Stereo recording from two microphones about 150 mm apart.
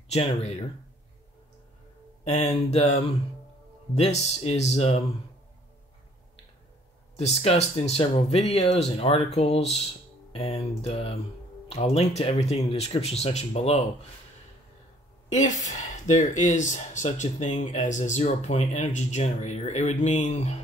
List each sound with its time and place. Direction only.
0.1 s speech: 45° left (ahead or behind)
2.2 s speech: 50° left (ahead or behind)
7.2 s speech: 45° left (ahead or behind)
15.2 s speech: 55° left (ahead or behind)